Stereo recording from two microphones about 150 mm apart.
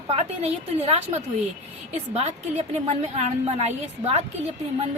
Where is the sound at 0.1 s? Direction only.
45° right (ahead or behind).